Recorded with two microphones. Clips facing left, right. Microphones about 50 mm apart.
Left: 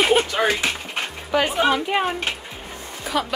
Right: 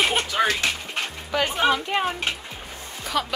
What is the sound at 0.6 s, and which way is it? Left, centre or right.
Dog, centre.